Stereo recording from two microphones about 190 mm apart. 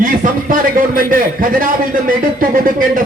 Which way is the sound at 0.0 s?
45° right (ahead or behind).